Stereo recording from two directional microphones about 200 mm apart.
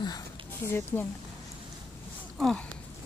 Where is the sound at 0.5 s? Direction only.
10° left (ahead or behind).